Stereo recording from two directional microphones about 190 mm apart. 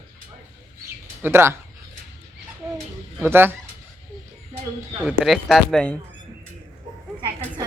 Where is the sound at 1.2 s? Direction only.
15° right (ahead or behind).